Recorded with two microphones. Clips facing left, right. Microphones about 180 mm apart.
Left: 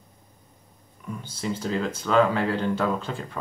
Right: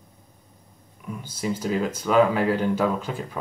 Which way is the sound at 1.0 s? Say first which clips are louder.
Right 2 dB; 10° right (ahead or behind).